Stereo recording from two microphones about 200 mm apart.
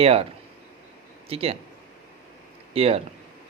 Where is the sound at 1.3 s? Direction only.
30° right (ahead or behind).